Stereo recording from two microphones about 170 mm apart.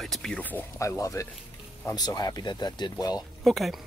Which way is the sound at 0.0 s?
Centre (ahead or behind).